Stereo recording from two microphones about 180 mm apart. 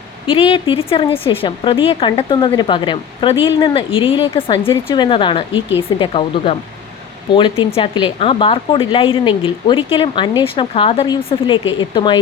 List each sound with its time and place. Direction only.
0.3 s speech: 30° left (ahead or behind)